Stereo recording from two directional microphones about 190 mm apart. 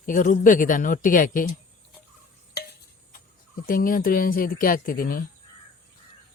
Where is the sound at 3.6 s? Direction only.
45° left (ahead or behind).